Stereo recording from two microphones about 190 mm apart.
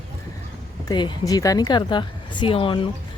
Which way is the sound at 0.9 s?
20° left (ahead or behind).